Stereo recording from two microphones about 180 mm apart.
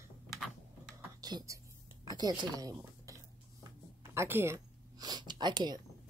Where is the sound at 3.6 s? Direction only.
15° right (ahead or behind).